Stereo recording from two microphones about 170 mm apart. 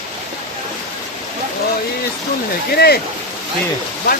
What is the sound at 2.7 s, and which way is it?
Speech, 65° left (ahead or behind).